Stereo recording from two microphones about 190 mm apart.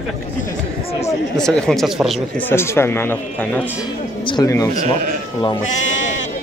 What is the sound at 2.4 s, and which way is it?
Speech, 15° left (ahead or behind).